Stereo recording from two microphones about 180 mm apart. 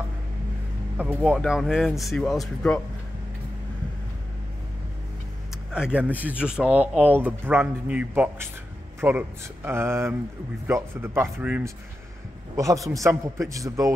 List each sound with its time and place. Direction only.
0.9 s speech: 5° right (ahead or behind)
5.7 s speech: 5° right (ahead or behind)